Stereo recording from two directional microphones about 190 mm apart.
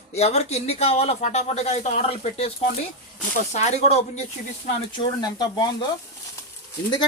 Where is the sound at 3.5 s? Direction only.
35° left (ahead or behind).